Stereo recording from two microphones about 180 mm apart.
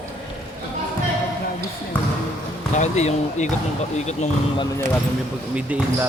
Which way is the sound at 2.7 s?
40° left (ahead or behind).